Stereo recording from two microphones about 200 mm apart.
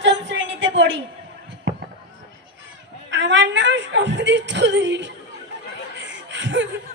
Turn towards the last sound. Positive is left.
turn(degrees=-65)  # may be behind; listen again after turning